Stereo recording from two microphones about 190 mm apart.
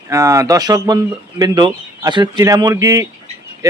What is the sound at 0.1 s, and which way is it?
A man's voice, 15° right (ahead or behind).